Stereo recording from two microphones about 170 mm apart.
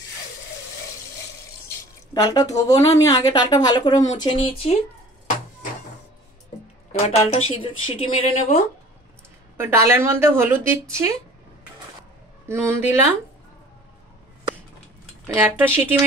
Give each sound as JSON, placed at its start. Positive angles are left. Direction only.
{"t": 2.2, "sound": "a woman's voice", "side_deg": 20}
{"t": 6.9, "sound": "speech", "side_deg": 40}
{"t": 9.6, "sound": "speech", "side_deg": -15}
{"t": 12.4, "sound": "speech", "side_deg": -15}
{"t": 15.2, "sound": "speech", "side_deg": -10}